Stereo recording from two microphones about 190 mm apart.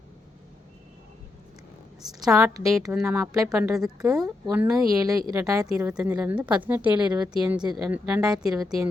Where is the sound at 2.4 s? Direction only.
15° right (ahead or behind).